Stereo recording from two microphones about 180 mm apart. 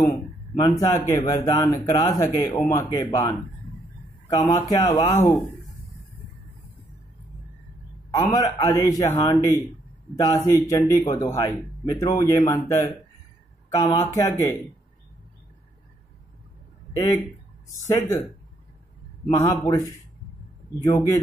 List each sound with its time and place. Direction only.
0.0 s a sound: 15° left (ahead or behind)
0.7 s speech: 15° left (ahead or behind)
8.1 s speech: 20° left (ahead or behind)
16.9 s a man's voice: 20° left (ahead or behind)
19.3 s speech: 15° left (ahead or behind)